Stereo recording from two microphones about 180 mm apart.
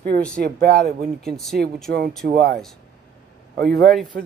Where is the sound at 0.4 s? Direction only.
55° right (ahead or behind).